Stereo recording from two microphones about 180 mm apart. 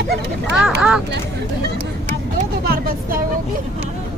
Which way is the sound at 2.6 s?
55° right (ahead or behind).